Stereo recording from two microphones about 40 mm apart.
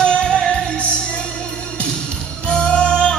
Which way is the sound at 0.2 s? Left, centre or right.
Left.